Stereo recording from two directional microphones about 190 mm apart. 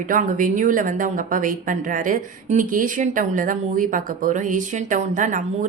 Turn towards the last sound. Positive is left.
turn(degrees=-40)  # may be behind; listen again after turning